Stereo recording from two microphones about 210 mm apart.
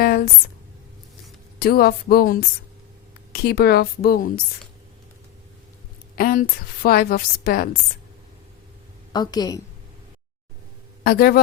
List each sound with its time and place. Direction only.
1.5 s a woman's voice: 45° left (ahead or behind)
6.1 s a woman's voice: 45° left (ahead or behind)
9.1 s a woman's voice: 20° left (ahead or behind)
11.0 s speech: 45° left (ahead or behind)